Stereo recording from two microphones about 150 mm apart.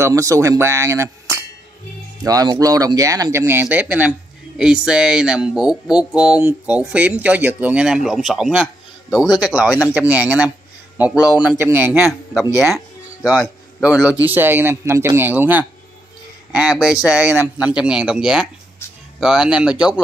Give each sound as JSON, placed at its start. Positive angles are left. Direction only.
{"t": 0.0, "sound": "speech", "side_deg": -20}
{"t": 12.5, "sound": "music", "side_deg": 0}
{"t": 13.8, "sound": "speech", "side_deg": -5}